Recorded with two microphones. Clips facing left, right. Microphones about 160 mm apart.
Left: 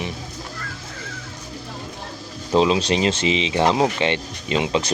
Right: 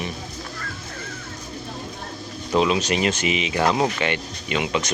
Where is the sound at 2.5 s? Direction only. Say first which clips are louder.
Left 3 dB; 25° left (ahead or behind).